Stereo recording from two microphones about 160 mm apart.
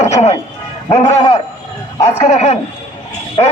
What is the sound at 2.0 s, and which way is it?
Speech, 40° left (ahead or behind).